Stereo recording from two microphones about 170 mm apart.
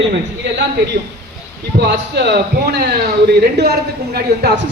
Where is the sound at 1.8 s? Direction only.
80° right.